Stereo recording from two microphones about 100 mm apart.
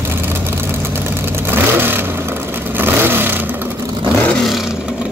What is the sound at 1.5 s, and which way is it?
Vehicle, 20° right (ahead or behind).